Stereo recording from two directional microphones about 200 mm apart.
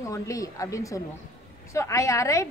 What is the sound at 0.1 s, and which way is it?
A woman's voice, 15° left (ahead or behind).